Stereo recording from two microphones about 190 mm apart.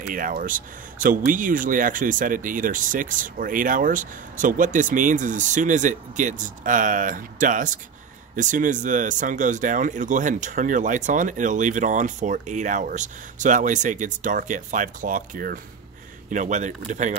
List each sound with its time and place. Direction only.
0.1 s speech: 45° right (ahead or behind)